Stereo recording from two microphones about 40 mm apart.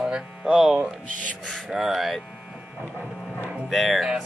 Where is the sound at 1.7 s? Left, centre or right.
Centre.